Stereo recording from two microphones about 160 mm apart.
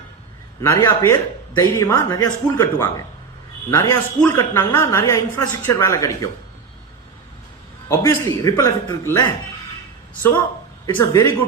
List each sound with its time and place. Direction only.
0.6 s a man's voice: 15° left (ahead or behind)
7.9 s a man's voice: 20° left (ahead or behind)
10.8 s a woman's voice: 20° left (ahead or behind)